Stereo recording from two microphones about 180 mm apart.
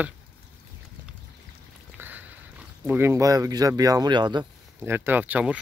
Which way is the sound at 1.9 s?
10° right (ahead or behind).